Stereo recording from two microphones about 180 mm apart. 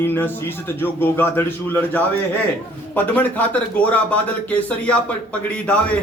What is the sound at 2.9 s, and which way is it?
Speech, 10° left (ahead or behind).